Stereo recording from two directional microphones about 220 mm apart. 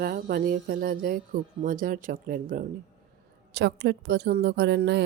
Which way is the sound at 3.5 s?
50° right (ahead or behind).